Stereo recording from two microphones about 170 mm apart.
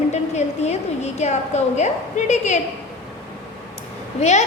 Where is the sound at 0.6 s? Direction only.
40° left (ahead or behind).